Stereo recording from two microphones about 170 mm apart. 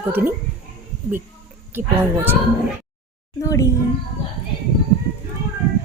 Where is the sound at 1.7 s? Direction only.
10° right (ahead or behind).